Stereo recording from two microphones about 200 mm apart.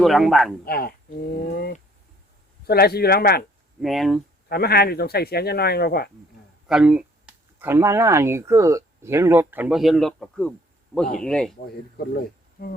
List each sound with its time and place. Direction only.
0.0 s speech: centre (ahead or behind)
0.6 s speech: 50° left (ahead or behind)
3.8 s speech: centre (ahead or behind)
4.4 s speech: 50° left (ahead or behind)
6.7 s speech: 5° right (ahead or behind)
12.0 s speech: 50° left (ahead or behind)